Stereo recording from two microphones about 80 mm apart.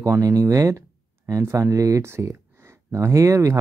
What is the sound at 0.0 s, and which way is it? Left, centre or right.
Speech, right.